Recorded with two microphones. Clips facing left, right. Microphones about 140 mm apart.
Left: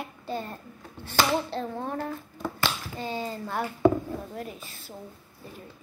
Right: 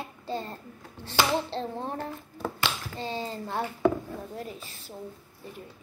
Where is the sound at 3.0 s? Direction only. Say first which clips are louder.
Left 1 dB; 25° right (ahead or behind).